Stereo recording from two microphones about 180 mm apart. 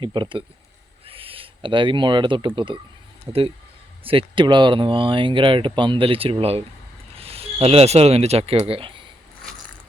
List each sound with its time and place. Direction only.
0.0 s speech: 25° right (ahead or behind)
1.0 s a sound: 30° right (ahead or behind)
4.0 s speech: 30° right (ahead or behind)